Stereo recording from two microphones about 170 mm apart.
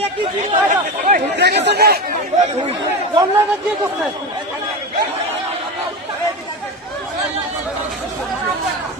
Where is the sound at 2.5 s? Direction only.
35° right (ahead or behind).